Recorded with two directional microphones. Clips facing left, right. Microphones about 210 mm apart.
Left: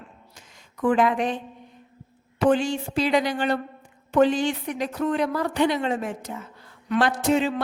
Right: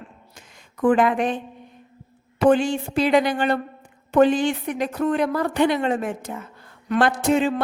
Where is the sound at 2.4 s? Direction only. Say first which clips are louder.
Right 3 dB; 55° right (ahead or behind).